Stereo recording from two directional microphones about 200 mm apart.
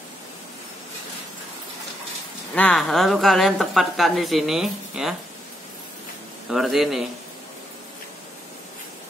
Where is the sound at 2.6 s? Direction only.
5° left (ahead or behind).